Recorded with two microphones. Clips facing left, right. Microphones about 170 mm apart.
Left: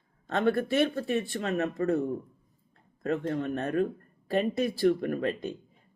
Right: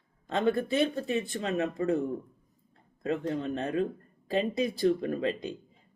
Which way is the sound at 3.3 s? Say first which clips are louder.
Left 1 dB; 25° right (ahead or behind).